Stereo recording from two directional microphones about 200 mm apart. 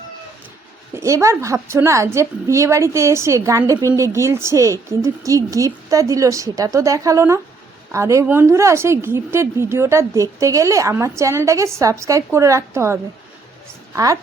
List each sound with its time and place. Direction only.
0.9 s a woman's voice: 15° right (ahead or behind)